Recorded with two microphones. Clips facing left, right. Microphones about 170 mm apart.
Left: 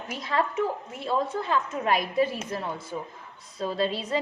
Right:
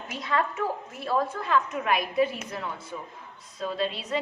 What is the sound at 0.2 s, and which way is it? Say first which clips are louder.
A woman's voice: left 1 dB; 35° left (ahead or behind).